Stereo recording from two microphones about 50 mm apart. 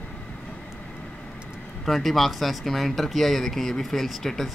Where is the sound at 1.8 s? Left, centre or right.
Centre.